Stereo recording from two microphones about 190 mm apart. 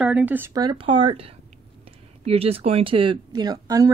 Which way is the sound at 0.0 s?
10° right (ahead or behind).